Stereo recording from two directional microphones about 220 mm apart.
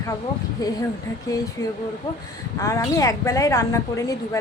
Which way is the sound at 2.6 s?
15° left (ahead or behind).